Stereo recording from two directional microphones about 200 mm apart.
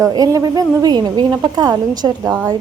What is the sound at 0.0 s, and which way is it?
A woman's voice, 15° right (ahead or behind).